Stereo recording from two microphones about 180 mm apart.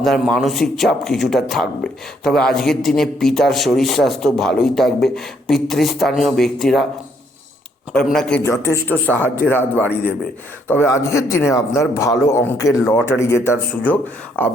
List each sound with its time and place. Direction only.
0.0 s a man's voice: centre (ahead or behind)
7.9 s a man's voice: 5° left (ahead or behind)
8.4 s a man's voice: 15° left (ahead or behind)